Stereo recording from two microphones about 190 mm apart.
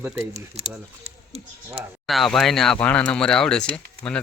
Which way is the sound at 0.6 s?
35° right (ahead or behind).